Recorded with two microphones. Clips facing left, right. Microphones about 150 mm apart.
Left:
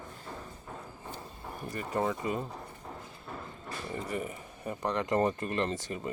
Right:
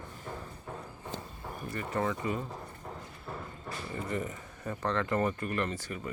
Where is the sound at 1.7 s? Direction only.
15° left (ahead or behind).